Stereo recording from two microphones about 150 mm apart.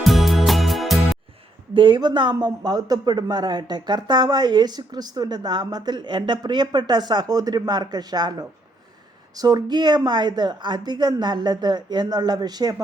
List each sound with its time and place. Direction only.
0.0 s music: centre (ahead or behind)
1.7 s speech: 35° right (ahead or behind)